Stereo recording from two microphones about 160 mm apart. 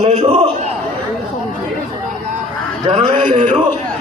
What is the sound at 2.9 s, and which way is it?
Speech, 30° right (ahead or behind).